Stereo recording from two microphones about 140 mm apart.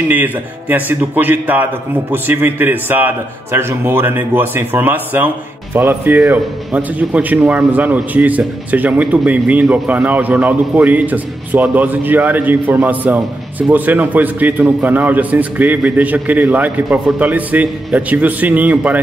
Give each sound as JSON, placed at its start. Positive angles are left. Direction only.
{"t": 0.1, "sound": "a man's voice", "side_deg": -10}